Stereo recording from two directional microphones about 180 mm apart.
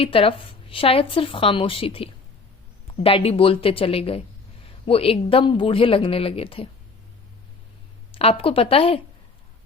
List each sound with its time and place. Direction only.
0.0 s a woman's voice: 30° left (ahead or behind)
8.1 s speech: 30° left (ahead or behind)